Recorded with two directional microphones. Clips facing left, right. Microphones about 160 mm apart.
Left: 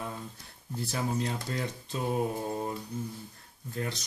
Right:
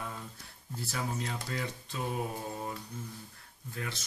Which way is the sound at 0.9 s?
35° left (ahead or behind).